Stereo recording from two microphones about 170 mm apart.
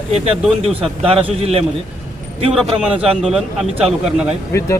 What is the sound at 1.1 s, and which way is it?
Speech, 35° right (ahead or behind).